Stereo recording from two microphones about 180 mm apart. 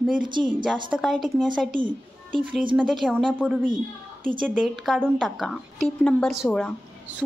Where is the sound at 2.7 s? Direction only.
5° right (ahead or behind).